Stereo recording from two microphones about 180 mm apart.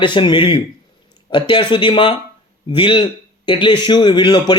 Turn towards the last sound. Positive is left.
turn(degrees=25)  # may be behind; listen again after turning